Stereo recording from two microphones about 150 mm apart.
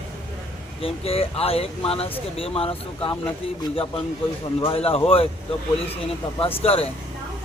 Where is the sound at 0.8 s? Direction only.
40° left (ahead or behind).